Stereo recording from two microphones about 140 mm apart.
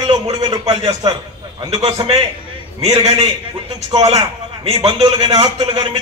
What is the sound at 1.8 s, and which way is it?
A man's voice, 45° right (ahead or behind).